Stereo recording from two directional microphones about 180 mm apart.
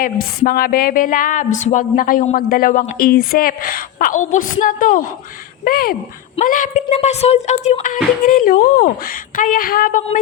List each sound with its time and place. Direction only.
0.0 s a woman's voice: 50° left (ahead or behind)